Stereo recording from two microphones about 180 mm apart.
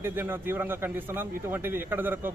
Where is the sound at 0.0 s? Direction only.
10° right (ahead or behind).